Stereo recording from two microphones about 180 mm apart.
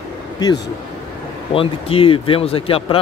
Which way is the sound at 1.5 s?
30° left (ahead or behind).